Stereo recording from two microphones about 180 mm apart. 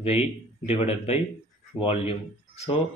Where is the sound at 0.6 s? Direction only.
35° left (ahead or behind).